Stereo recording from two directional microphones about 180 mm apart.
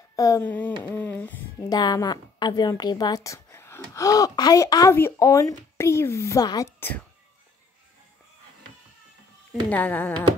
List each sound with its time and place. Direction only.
0.1 s speech: 20° left (ahead or behind)
1.7 s a woman's voice: 20° left (ahead or behind)
9.7 s speech: 10° left (ahead or behind)